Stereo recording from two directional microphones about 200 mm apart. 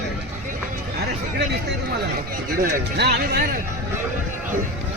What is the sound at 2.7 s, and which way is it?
Speech, 50° right (ahead or behind).